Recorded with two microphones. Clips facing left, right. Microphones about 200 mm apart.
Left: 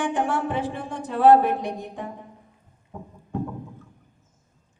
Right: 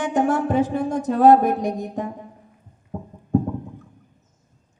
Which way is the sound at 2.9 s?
45° right (ahead or behind).